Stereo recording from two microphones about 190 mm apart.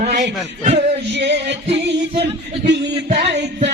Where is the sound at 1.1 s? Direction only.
65° right (ahead or behind).